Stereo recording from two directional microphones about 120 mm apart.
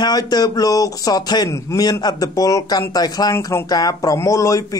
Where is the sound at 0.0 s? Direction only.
35° left (ahead or behind).